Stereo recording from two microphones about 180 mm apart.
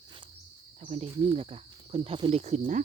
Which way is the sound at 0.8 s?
35° right (ahead or behind).